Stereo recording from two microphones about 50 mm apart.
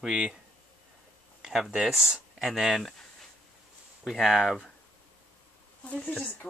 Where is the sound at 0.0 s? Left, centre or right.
Centre.